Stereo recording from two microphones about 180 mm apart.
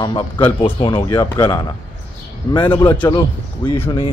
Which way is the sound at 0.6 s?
30° left (ahead or behind).